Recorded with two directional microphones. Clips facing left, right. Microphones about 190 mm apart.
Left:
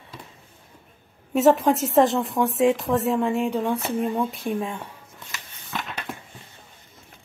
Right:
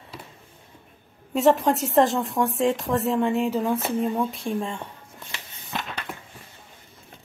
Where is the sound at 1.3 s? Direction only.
Centre (ahead or behind).